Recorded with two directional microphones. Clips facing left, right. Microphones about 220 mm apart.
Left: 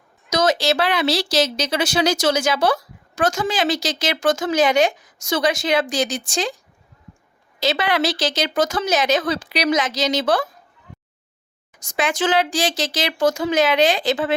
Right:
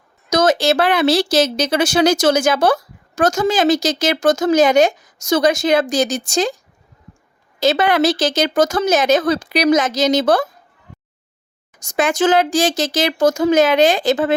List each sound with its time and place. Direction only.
0.3 s a woman's voice: 50° right (ahead or behind)
7.6 s a woman's voice: 45° right (ahead or behind)
11.8 s a woman's voice: 45° right (ahead or behind)